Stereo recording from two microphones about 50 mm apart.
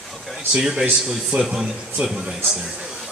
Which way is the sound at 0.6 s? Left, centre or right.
Centre.